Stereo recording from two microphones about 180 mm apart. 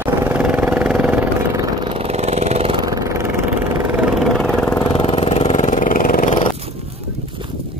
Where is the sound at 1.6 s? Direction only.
30° right (ahead or behind).